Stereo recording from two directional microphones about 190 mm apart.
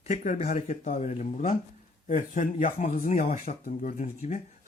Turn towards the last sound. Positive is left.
turn(degrees=40)  # may be behind; listen again after turning